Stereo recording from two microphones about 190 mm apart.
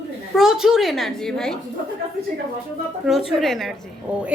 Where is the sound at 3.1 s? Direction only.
Centre (ahead or behind).